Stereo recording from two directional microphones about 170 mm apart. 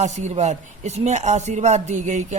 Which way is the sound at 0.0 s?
45° right (ahead or behind).